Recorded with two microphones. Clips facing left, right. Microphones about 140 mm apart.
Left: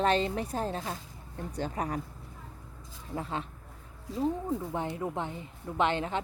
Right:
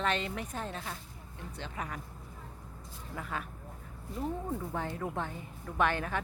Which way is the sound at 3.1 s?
25° left (ahead or behind).